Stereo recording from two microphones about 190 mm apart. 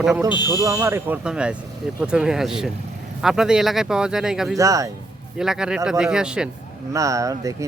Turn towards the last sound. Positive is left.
turn(degrees=-15)  # may be behind; listen again after turning